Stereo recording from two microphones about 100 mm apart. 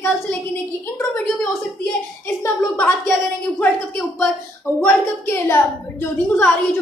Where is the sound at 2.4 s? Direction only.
25° left (ahead or behind).